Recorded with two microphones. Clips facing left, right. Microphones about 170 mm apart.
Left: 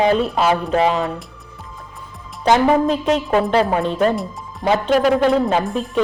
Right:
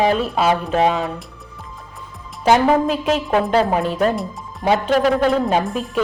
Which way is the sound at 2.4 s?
5° right (ahead or behind).